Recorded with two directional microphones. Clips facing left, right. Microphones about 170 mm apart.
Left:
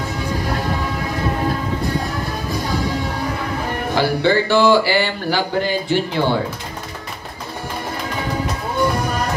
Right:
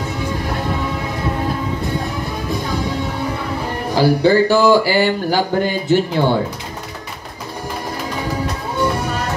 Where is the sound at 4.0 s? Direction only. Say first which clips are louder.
Right 4 dB; 40° right (ahead or behind).